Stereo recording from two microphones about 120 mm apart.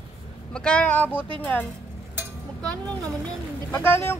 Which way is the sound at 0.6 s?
10° left (ahead or behind).